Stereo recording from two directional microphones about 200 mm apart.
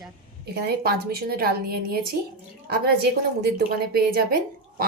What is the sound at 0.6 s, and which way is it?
A woman's voice, 50° right (ahead or behind).